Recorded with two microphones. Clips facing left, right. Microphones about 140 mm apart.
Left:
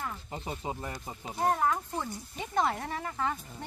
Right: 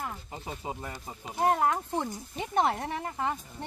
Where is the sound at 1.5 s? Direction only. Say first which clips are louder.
Right 2 dB; 25° right (ahead or behind).